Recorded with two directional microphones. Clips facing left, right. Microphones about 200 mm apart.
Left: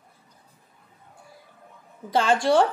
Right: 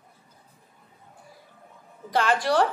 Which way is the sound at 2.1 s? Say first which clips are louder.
Left 3 dB; 25° left (ahead or behind).